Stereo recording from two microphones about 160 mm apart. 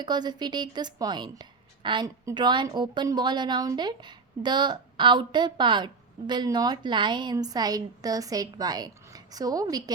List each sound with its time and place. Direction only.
0.0 s a woman's voice: 25° right (ahead or behind)